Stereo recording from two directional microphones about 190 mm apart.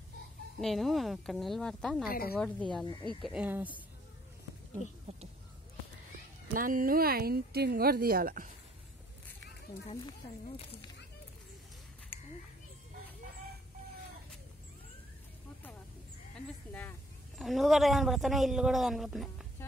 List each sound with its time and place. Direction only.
0.6 s a man's voice: centre (ahead or behind)
2.0 s a woman's voice: 50° left (ahead or behind)
2.8 s speech: 20° left (ahead or behind)
3.2 s speech: 5° right (ahead or behind)
5.1 s speech: 35° right (ahead or behind)
6.5 s speech: 45° right (ahead or behind)
9.8 s speech: 30° left (ahead or behind)
17.4 s a man's voice: centre (ahead or behind)